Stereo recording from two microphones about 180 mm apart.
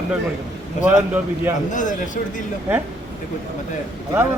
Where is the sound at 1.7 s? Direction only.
45° left (ahead or behind).